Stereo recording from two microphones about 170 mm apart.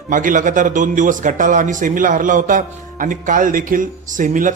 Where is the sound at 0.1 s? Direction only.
50° right (ahead or behind).